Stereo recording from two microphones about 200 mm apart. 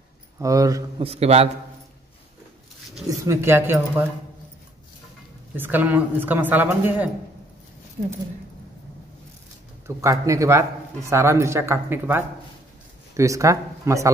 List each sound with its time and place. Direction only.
0.4 s a woman's voice: 15° right (ahead or behind)
1.0 s a man's voice: 30° right (ahead or behind)
3.1 s a woman's voice: 15° right (ahead or behind)
5.6 s a woman's voice: 10° right (ahead or behind)
9.8 s a woman's voice: 15° right (ahead or behind)